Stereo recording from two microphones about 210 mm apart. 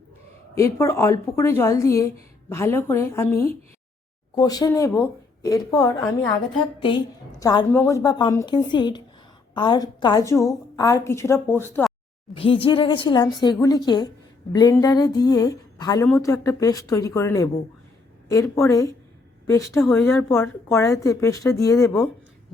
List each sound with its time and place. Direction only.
0.5 s a woman's voice: 15° left (ahead or behind)
12.3 s a woman's voice: 25° left (ahead or behind)